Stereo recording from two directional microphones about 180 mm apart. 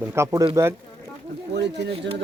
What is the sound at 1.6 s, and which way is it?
Speech, 70° right (ahead or behind).